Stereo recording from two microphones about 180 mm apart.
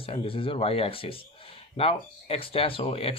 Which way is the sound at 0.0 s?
30° left (ahead or behind).